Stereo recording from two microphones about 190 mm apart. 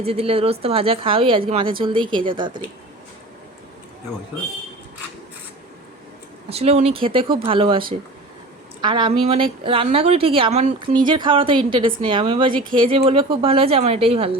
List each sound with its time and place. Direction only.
0.0 s a woman's voice: 30° right (ahead or behind)
6.5 s a woman's voice: 35° right (ahead or behind)